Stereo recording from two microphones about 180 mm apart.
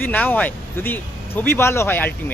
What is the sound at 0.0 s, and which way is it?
Speech, 10° left (ahead or behind).